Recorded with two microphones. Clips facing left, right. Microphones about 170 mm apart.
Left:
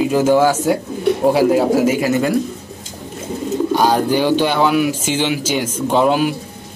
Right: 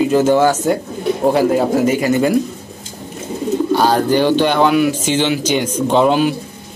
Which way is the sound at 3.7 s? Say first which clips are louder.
Right 1 dB; 10° left (ahead or behind).